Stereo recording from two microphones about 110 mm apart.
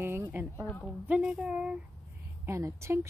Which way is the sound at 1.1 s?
10° right (ahead or behind).